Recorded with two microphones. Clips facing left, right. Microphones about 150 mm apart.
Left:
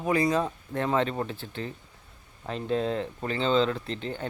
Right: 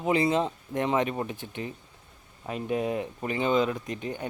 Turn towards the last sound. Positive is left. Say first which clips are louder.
# even
turn(degrees=-15)  # may be behind; listen again after turning